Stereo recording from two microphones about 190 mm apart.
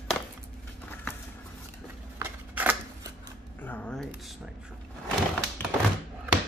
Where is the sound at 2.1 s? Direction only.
10° right (ahead or behind).